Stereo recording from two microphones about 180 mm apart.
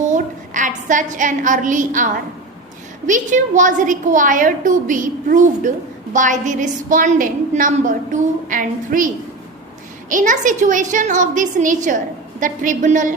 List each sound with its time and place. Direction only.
0.1 s a woman's voice: 45° right (ahead or behind)
10.1 s a woman's voice: 45° right (ahead or behind)